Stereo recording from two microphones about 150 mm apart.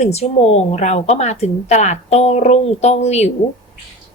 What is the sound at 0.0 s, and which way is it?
A woman's voice, 45° left (ahead or behind).